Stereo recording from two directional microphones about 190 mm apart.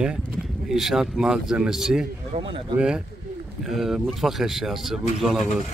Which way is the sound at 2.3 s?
35° right (ahead or behind).